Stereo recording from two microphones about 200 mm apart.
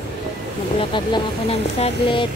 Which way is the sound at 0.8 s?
25° left (ahead or behind).